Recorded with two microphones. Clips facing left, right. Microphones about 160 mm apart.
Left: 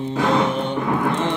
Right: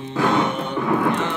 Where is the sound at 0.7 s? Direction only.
30° left (ahead or behind).